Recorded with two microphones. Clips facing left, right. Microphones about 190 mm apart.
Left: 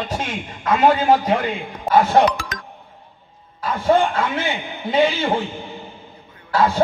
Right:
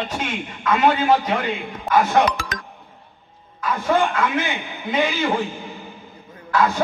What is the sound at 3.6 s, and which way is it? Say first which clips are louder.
A man's voice: left 3 dB; 35° left (ahead or behind).